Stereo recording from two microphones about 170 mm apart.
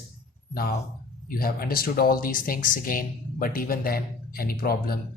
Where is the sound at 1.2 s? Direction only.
60° left (ahead or behind).